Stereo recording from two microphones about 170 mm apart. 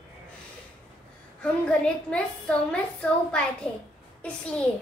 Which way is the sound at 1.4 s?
5° left (ahead or behind).